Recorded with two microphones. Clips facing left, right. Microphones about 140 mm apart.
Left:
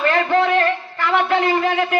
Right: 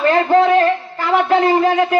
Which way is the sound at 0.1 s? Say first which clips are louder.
Right 6 dB; 30° right (ahead or behind).